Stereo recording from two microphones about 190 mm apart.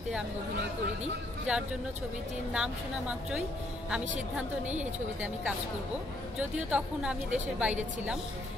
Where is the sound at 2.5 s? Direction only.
5° right (ahead or behind).